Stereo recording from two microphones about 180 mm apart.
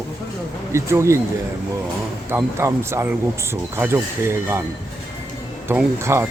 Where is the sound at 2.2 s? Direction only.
15° right (ahead or behind).